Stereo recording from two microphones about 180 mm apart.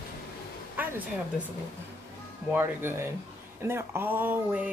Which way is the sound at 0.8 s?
10° right (ahead or behind).